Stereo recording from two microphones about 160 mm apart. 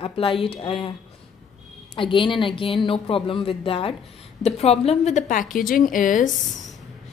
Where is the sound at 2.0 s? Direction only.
30° left (ahead or behind); by 6.3 s 55° left (ahead or behind).